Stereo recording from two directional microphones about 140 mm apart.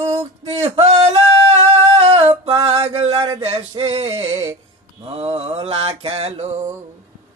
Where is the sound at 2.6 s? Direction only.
45° right (ahead or behind).